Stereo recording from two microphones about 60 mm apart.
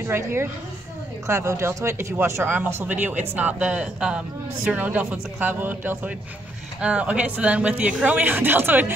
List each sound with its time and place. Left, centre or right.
0.1 s a woman's voice: right
1.2 s speech: right
2.5 s speech: right; by 4.2 s centre
4.7 s speech: right
6.8 s speech: centre; by 8.9 s right